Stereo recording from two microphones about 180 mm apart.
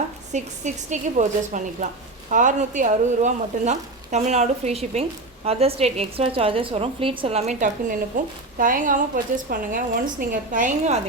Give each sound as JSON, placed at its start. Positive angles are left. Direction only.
{"t": 0.3, "sound": "a woman's voice", "side_deg": -40}